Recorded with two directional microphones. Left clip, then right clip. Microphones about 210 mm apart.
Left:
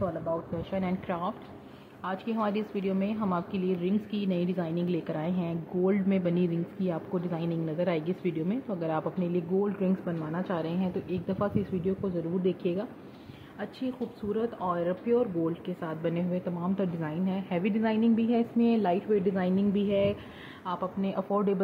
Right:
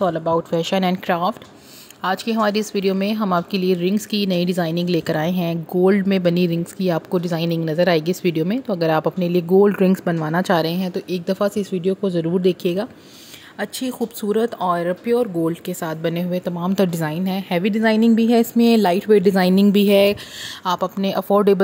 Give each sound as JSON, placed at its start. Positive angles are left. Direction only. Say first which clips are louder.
{"t": 0.0, "sound": "speech", "louder": "right 12 dB", "side_deg": -55}